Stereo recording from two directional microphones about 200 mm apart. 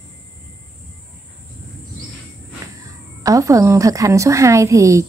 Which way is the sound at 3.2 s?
15° right (ahead or behind).